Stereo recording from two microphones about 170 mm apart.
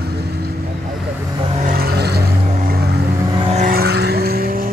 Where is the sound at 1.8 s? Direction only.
70° right (ahead or behind).